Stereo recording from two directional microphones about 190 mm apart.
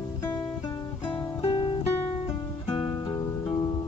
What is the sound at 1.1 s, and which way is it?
Music, 25° left (ahead or behind).